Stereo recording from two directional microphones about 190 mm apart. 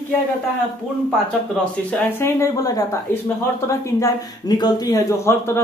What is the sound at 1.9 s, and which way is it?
Speech, 10° left (ahead or behind).